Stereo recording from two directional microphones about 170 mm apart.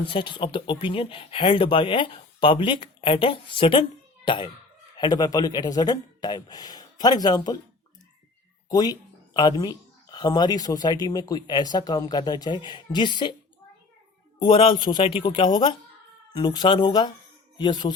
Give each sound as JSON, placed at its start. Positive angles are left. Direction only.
{"t": 0.0, "sound": "speech", "side_deg": 30}
{"t": 4.9, "sound": "speech", "side_deg": 25}
{"t": 8.7, "sound": "speech", "side_deg": 25}
{"t": 14.5, "sound": "speech", "side_deg": 25}